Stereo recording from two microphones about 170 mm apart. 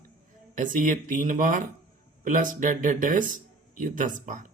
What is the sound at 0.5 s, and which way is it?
Speech, 50° right (ahead or behind).